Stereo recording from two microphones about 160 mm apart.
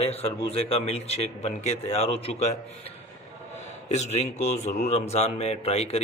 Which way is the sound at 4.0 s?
45° left (ahead or behind).